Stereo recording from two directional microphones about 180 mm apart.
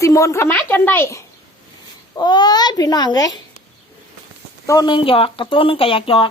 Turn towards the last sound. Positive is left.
turn(degrees=30)  # may be behind; listen again after turning